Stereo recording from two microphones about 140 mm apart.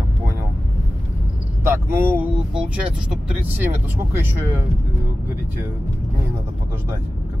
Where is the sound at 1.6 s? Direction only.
15° right (ahead or behind).